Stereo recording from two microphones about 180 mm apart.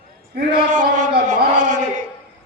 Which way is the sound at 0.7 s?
45° right (ahead or behind).